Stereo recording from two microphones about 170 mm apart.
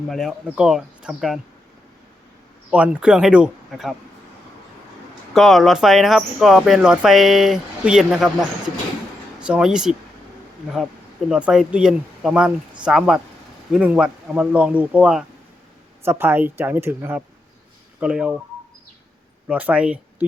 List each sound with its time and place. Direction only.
0.1 s speech: centre (ahead or behind)
2.6 s speech: 10° right (ahead or behind)
5.3 s speech: centre (ahead or behind)
19.5 s speech: 10° right (ahead or behind)